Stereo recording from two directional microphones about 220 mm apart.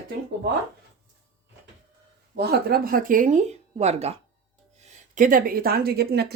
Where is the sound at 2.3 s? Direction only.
45° right (ahead or behind).